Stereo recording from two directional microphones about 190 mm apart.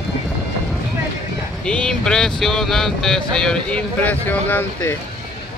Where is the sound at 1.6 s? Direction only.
5° left (ahead or behind).